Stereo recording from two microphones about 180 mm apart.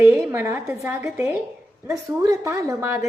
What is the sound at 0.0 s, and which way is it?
A woman's voice, 15° right (ahead or behind).